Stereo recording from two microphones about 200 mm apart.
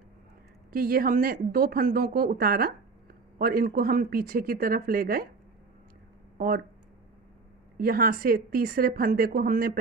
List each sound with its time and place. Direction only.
0.7 s a woman's voice: 45° right (ahead or behind)
6.3 s speech: 45° right (ahead or behind)
7.7 s a woman's voice: 45° right (ahead or behind)